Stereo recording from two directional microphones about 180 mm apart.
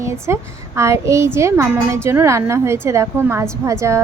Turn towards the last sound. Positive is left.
turn(degrees=-15)  # may be behind; listen again after turning